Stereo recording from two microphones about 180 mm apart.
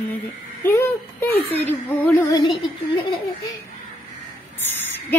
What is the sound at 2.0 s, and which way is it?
Female singing, 10° left (ahead or behind).